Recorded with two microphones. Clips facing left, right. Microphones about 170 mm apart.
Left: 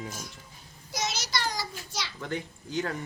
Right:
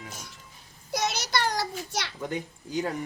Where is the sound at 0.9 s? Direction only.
55° right (ahead or behind).